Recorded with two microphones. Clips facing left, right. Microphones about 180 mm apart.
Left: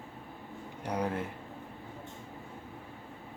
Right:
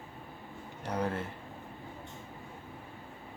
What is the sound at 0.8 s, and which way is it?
Speech, 10° left (ahead or behind).